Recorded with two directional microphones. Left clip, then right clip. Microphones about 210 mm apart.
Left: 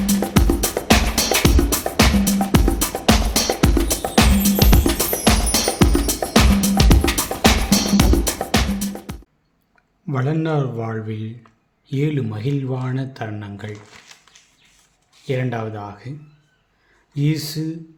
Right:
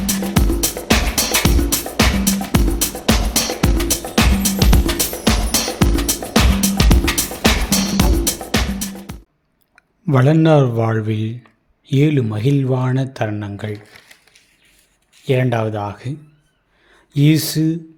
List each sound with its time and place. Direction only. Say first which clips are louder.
0.0 s music: even; centre (ahead or behind)
10.1 s speech: right 9 dB; 35° right (ahead or behind)
15.3 s speech: right 6 dB; 35° right (ahead or behind)
17.2 s speech: right 8 dB; 40° right (ahead or behind)